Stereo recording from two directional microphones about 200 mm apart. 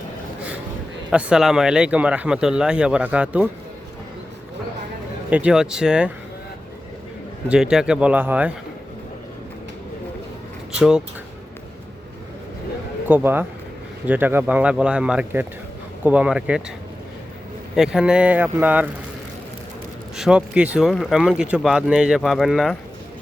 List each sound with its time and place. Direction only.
1.1 s speech: 5° right (ahead or behind)
5.3 s speech: 5° right (ahead or behind)
7.4 s speech: 5° right (ahead or behind)
10.8 s speech: 5° right (ahead or behind)
13.1 s speech: 10° right (ahead or behind)
17.7 s speech: 5° right (ahead or behind)
20.1 s speech: 5° right (ahead or behind)